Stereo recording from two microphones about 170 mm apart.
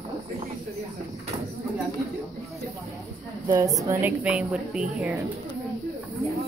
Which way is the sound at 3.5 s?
20° right (ahead or behind).